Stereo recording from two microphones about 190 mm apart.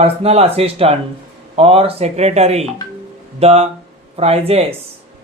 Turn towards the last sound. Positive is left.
turn(degrees=-35)  # may be behind; listen again after turning